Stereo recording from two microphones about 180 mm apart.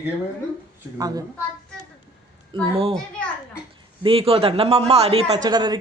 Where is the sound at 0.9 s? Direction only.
20° right (ahead or behind).